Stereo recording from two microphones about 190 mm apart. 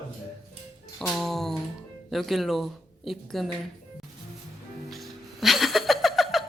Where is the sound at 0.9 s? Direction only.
Centre (ahead or behind).